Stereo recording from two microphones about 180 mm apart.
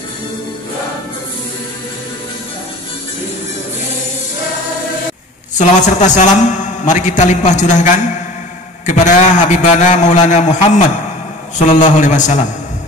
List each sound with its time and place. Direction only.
5.6 s a man's voice: 40° left (ahead or behind)